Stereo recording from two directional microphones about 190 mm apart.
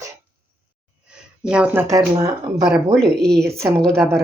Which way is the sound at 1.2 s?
5° right (ahead or behind).